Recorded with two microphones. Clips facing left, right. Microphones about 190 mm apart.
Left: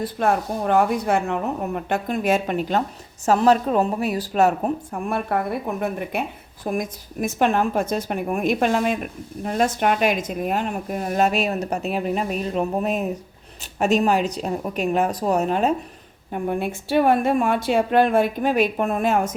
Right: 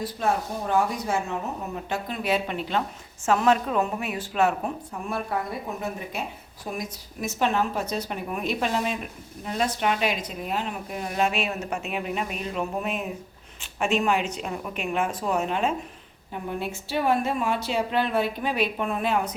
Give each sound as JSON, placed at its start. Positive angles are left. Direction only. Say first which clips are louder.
{"t": 0.0, "sound": "a woman's voice", "louder": "left 5 dB", "side_deg": 60}
{"t": 5.0, "sound": "a woman's voice", "louder": "left 5 dB", "side_deg": 60}
{"t": 16.3, "sound": "a woman's voice", "louder": "left 6 dB", "side_deg": 55}